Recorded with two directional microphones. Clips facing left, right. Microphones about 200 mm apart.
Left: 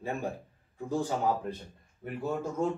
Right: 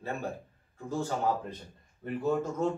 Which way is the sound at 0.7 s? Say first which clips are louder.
Left 2 dB; 15° left (ahead or behind).